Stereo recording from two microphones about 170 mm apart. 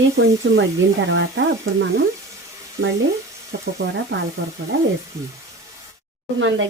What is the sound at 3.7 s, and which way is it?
Speech, 90° right.